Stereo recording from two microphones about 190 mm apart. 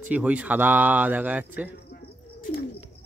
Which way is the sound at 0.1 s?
5° right (ahead or behind).